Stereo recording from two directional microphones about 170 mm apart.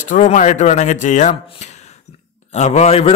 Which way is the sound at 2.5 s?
40° left (ahead or behind).